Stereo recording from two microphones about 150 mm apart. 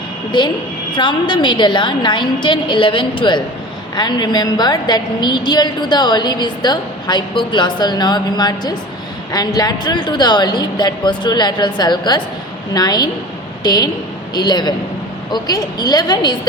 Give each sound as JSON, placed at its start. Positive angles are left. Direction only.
{"t": 0.3, "sound": "a woman's voice", "side_deg": 30}